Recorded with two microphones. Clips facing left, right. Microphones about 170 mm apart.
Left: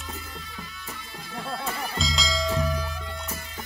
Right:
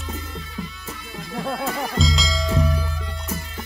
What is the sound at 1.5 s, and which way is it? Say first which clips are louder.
Music: right 6 dB; 80° right.